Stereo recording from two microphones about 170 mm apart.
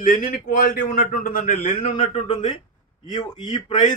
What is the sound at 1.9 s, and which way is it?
Speech, 30° left (ahead or behind).